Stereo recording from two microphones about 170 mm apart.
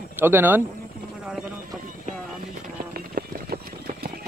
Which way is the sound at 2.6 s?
60° right (ahead or behind).